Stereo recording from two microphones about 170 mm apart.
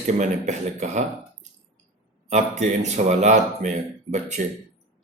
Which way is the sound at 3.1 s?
45° right (ahead or behind).